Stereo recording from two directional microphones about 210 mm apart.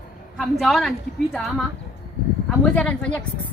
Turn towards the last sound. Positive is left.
turn(degrees=5)  # may be behind; listen again after turning